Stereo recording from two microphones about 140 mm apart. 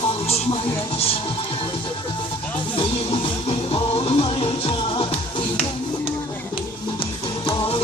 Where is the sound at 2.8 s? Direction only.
40° left (ahead or behind).